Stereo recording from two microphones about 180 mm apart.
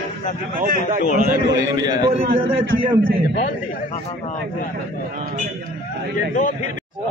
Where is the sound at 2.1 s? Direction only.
40° right (ahead or behind).